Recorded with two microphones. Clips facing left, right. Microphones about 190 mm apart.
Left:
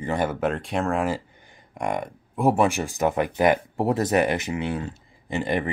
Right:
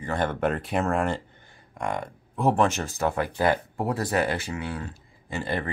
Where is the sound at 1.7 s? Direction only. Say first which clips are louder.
Left 3 dB; 15° left (ahead or behind).